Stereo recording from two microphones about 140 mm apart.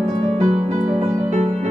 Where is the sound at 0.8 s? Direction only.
70° right (ahead or behind).